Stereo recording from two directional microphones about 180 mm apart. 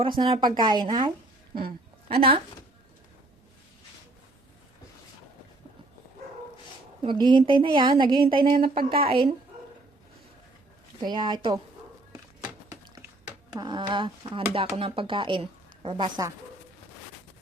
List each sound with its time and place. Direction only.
0.2 s speech: 25° right (ahead or behind)
7.0 s speech: 25° right (ahead or behind)
8.7 s speech: 55° right (ahead or behind)
9.0 s speech: 30° right (ahead or behind)
11.0 s speech: 25° right (ahead or behind)
13.6 s speech: 25° right (ahead or behind)